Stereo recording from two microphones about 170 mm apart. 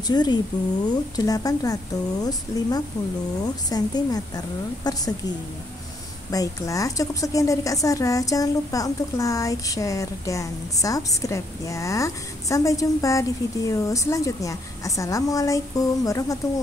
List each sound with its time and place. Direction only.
0.0 s a woman's voice: 25° left (ahead or behind)
6.3 s a woman's voice: 20° left (ahead or behind)